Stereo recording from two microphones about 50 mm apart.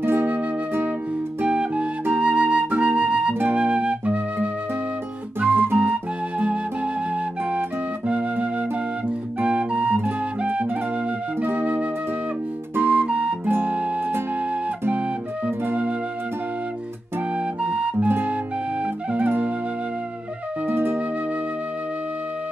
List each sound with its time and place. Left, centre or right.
0.0 s music: right
1.4 s music: right
2.1 s flute: right
5.4 s music: right
9.4 s flute: right
11.4 s music: right
12.8 s music: right
13.5 s music: right
15.4 s music: right
17.6 s music: right
19.1 s music: right
20.6 s flute: right